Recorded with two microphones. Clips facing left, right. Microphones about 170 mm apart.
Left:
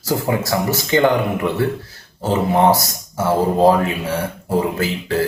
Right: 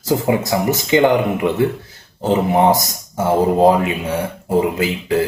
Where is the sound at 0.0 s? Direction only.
20° right (ahead or behind).